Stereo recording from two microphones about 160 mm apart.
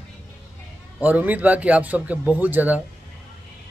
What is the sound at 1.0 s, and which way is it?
A man's voice, 10° right (ahead or behind).